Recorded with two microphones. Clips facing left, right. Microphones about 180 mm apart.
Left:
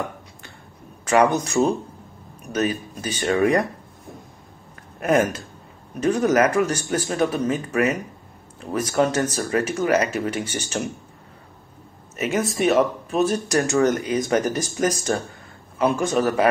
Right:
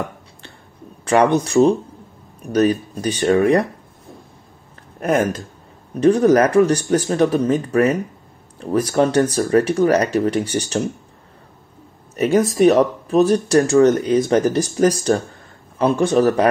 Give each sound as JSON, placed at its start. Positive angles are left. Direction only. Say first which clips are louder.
{"t": 1.0, "sound": "speech", "louder": "right 3 dB", "side_deg": -30}
{"t": 5.0, "sound": "speech", "louder": "right 1 dB", "side_deg": -35}
{"t": 12.2, "sound": "speech", "louder": "right 8 dB", "side_deg": -35}